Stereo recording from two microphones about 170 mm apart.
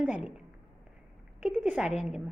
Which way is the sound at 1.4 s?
10° right (ahead or behind).